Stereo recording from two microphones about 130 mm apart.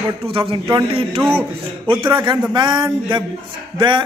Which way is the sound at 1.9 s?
35° right (ahead or behind).